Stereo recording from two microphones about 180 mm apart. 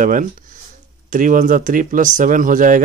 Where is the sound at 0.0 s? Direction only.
45° right (ahead or behind).